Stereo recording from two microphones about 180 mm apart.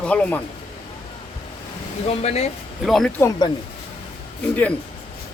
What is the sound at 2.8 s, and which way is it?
Speech, centre (ahead or behind).